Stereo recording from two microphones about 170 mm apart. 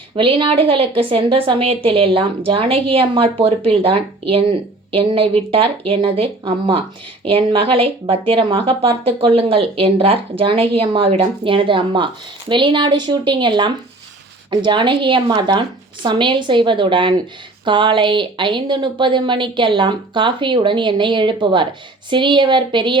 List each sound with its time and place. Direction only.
0.2 s a woman's voice: 30° right (ahead or behind)